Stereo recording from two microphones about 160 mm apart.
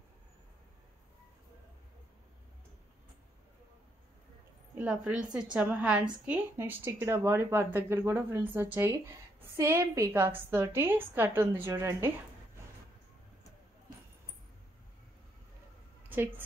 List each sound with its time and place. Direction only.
4.7 s speech: 5° right (ahead or behind)